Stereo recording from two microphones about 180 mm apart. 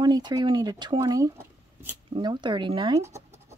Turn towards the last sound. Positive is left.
turn(degrees=-15)  # may be behind; listen again after turning